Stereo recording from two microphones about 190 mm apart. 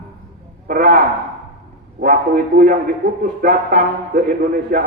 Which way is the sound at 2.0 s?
50° right (ahead or behind).